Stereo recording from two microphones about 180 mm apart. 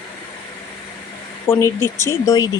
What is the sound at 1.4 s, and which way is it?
Speech, 15° left (ahead or behind).